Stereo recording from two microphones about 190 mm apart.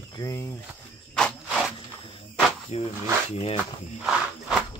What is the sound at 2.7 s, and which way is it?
Speech, 30° left (ahead or behind).